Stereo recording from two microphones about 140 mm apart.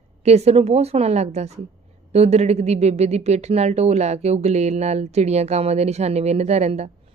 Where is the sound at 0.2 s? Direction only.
50° right (ahead or behind).